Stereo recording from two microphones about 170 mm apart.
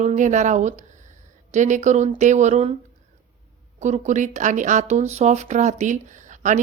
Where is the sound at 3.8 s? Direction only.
45° right (ahead or behind).